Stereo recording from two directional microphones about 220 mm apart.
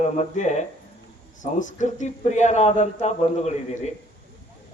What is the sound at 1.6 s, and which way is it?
A man's voice, 35° left (ahead or behind).